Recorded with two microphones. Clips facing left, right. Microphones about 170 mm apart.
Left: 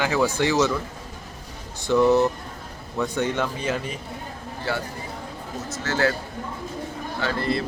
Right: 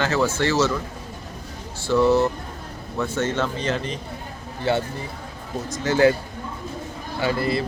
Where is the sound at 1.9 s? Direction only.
15° left (ahead or behind).